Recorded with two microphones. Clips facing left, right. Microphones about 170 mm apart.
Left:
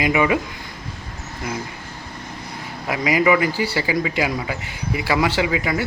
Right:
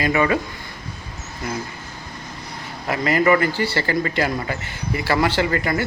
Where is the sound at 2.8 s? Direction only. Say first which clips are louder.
Even; 5° left (ahead or behind).